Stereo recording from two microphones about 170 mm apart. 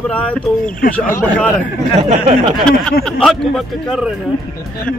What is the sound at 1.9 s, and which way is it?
Speech, 40° right (ahead or behind).